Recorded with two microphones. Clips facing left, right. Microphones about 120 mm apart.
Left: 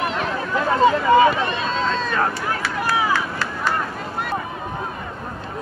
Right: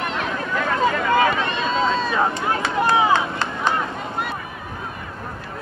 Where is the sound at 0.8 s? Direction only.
25° left (ahead or behind).